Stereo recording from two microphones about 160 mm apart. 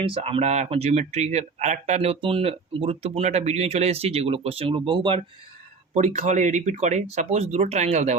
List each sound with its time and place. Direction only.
0.0 s speech: 35° right (ahead or behind)
5.9 s speech: 45° right (ahead or behind)